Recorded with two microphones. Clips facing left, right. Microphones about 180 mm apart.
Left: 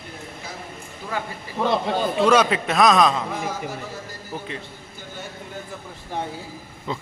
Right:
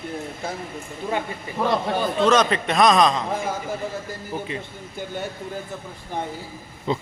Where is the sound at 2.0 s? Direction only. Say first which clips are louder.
Left 1 dB; 10° left (ahead or behind).